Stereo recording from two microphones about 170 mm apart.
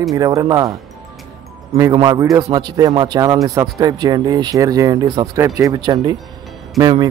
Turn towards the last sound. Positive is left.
turn(degrees=-20)  # may be behind; listen again after turning